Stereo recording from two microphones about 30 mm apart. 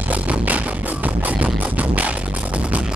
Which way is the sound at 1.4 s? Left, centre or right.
Right.